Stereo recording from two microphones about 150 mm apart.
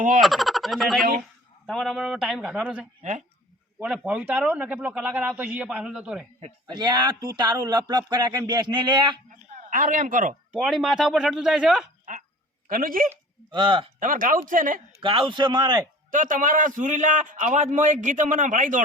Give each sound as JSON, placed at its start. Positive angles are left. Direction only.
{"t": 0.2, "sound": "a man's voice", "side_deg": 0}
{"t": 6.7, "sound": "speech", "side_deg": -30}
{"t": 9.6, "sound": "a man's voice", "side_deg": -60}
{"t": 10.5, "sound": "speech", "side_deg": 0}
{"t": 12.1, "sound": "a sound", "side_deg": -60}
{"t": 12.6, "sound": "speech", "side_deg": -70}
{"t": 13.5, "sound": "a man's voice", "side_deg": -30}
{"t": 14.0, "sound": "a man's voice", "side_deg": -65}
{"t": 15.0, "sound": "a man's voice", "side_deg": -35}
{"t": 16.1, "sound": "a man's voice", "side_deg": -60}